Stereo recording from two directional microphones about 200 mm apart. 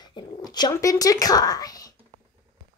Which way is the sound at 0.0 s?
20° left (ahead or behind).